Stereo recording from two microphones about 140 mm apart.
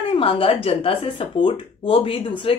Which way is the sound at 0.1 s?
40° left (ahead or behind).